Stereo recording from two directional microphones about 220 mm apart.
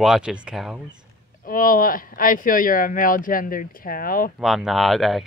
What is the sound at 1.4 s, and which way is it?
Speech, 40° left (ahead or behind).